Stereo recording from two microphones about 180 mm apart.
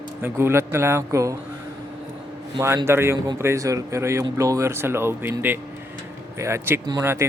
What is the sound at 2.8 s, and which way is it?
Speech, 15° right (ahead or behind).